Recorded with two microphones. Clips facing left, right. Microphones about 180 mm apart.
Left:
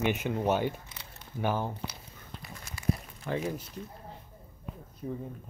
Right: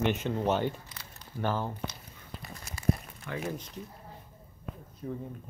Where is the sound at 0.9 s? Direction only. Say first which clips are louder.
Even; 15° left (ahead or behind).